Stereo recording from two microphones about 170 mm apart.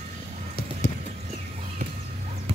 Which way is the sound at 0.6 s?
65° left (ahead or behind).